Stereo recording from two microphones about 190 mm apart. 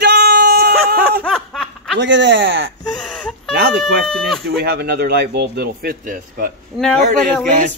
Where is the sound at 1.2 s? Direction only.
5° left (ahead or behind).